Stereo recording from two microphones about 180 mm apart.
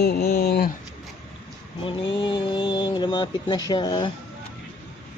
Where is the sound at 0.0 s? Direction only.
60° left (ahead or behind).